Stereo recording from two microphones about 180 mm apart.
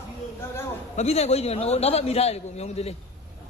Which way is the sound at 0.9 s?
35° left (ahead or behind).